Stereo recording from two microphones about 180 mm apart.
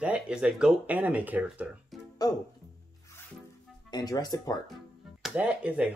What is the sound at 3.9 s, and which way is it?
Speech, 20° left (ahead or behind).